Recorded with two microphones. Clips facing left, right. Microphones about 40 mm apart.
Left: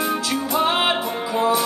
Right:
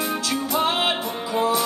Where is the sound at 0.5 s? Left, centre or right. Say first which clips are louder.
Left 3 dB; centre.